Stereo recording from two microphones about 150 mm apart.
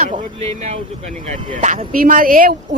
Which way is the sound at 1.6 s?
60° right (ahead or behind).